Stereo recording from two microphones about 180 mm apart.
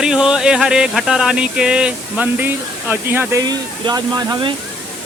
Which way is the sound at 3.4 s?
20° right (ahead or behind).